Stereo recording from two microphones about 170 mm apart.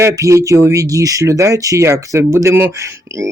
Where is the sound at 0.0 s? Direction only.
15° right (ahead or behind).